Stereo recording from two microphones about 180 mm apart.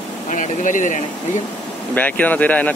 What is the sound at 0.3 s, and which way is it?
Speech, 45° left (ahead or behind).